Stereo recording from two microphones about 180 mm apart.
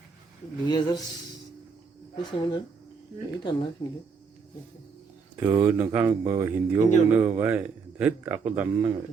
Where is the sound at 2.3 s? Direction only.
25° left (ahead or behind).